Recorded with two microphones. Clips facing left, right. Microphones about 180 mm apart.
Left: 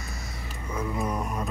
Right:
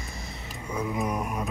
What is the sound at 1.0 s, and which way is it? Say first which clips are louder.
Music: even; 10° right (ahead or behind).